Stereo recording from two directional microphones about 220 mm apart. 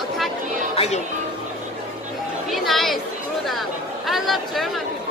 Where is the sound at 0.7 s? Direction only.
30° left (ahead or behind).